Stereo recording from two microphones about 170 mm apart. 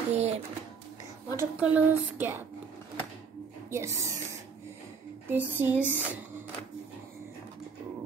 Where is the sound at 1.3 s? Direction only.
10° right (ahead or behind).